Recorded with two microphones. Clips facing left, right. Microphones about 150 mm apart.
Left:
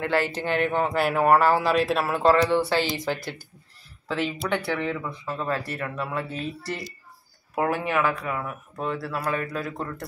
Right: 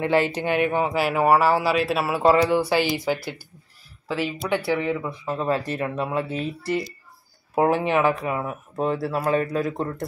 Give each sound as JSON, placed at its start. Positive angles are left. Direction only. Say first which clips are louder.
{"t": 0.0, "sound": "speech", "louder": "right 4 dB", "side_deg": -15}